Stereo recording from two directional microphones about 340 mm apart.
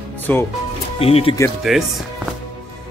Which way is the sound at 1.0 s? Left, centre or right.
Centre.